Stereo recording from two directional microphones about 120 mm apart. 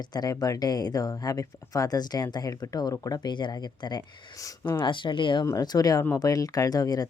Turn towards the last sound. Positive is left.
turn(degrees=30)  # may be behind; listen again after turning